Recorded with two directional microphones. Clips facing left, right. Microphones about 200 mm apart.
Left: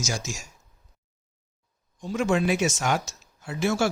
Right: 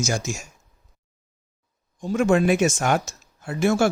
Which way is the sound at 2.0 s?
50° right (ahead or behind).